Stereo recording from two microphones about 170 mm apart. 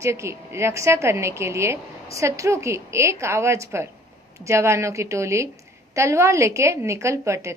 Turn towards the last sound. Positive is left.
turn(degrees=-15)  # may be behind; listen again after turning